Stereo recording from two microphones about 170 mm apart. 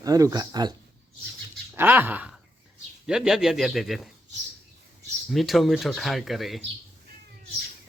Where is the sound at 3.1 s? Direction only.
5° right (ahead or behind).